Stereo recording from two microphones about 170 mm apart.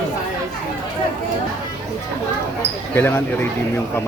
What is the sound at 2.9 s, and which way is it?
Speech, 10° left (ahead or behind).